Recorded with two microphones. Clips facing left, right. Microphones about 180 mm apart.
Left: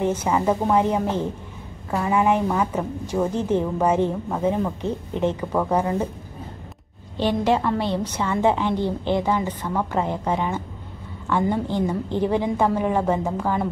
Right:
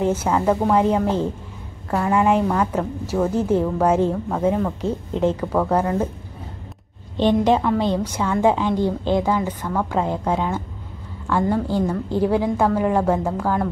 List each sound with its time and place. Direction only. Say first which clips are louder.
0.0 s a woman's voice: right 2 dB; 10° right (ahead or behind)
0.3 s a woman's voice: right 1 dB; 5° left (ahead or behind)
3.3 s speech: right 5 dB; 10° right (ahead or behind)
5.4 s a woman's voice: right 2 dB; 10° left (ahead or behind)
7.2 s speech: right 4 dB; 20° right (ahead or behind)
9.6 s a woman's voice: right 1 dB; 10° left (ahead or behind)
9.9 s a woman's voice: right 2 dB; 5° right (ahead or behind)